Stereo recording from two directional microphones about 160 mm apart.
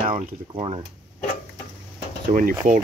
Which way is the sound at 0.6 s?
35° right (ahead or behind).